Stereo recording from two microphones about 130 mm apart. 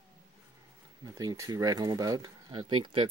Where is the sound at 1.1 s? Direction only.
30° right (ahead or behind).